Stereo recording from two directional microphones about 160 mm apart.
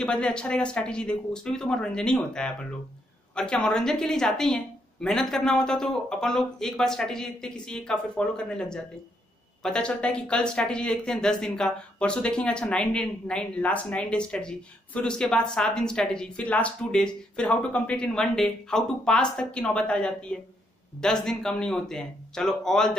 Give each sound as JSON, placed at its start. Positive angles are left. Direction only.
{"t": 0.0, "sound": "speech", "side_deg": 5}